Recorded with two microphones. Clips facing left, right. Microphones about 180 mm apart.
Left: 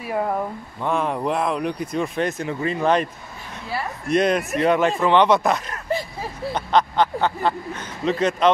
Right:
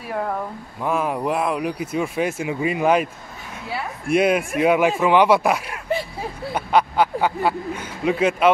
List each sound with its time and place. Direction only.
0.0 s speech: 10° left (ahead or behind)
0.7 s speech: 5° right (ahead or behind)